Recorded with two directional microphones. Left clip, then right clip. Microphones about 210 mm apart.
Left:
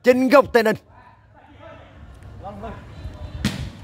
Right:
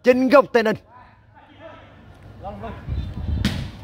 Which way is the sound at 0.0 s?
5° left (ahead or behind).